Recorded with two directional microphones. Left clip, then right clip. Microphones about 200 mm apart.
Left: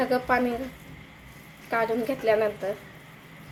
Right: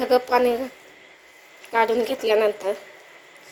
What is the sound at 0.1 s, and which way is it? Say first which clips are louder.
Speech: right 5 dB; 40° right (ahead or behind).